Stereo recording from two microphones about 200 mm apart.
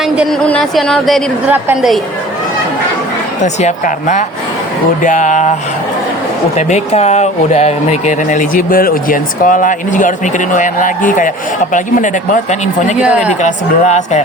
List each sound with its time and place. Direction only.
0.2 s a woman's voice: 5° left (ahead or behind)
3.4 s speech: 35° left (ahead or behind)
6.6 s speech: 35° left (ahead or behind)